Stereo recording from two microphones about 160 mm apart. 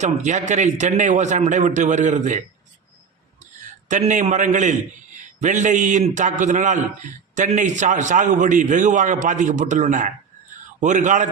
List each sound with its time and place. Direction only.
0.0 s a man's voice: 50° right (ahead or behind)
3.4 s a man's voice: 50° right (ahead or behind)